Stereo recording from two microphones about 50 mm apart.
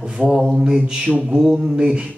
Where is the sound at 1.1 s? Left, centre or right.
Right.